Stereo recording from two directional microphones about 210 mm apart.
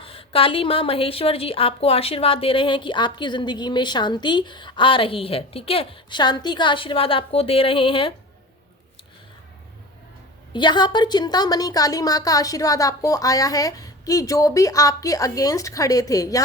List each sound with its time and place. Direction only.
0.0 s a woman's voice: 25° left (ahead or behind)
10.5 s a woman's voice: 20° left (ahead or behind)